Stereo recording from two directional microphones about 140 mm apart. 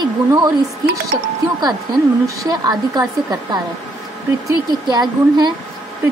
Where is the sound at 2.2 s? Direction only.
25° right (ahead or behind).